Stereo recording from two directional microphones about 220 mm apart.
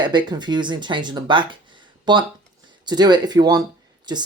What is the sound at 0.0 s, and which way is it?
Speech, 20° right (ahead or behind).